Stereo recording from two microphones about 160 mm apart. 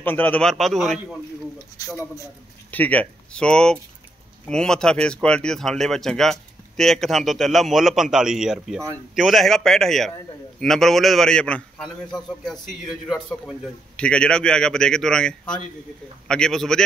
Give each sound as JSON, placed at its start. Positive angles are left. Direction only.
{"t": 0.0, "sound": "speech", "side_deg": 10}
{"t": 1.8, "sound": "a man's voice", "side_deg": 20}
{"t": 2.7, "sound": "speech", "side_deg": 10}